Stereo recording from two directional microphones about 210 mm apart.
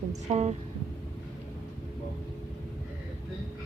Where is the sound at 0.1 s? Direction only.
30° right (ahead or behind).